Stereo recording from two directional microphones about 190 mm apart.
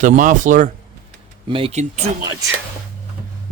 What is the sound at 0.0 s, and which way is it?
Speech, 40° right (ahead or behind).